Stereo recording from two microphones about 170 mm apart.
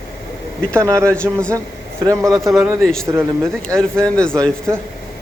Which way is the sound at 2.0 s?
20° right (ahead or behind).